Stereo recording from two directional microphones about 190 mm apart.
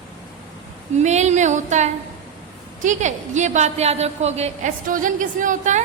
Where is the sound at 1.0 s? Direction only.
35° right (ahead or behind).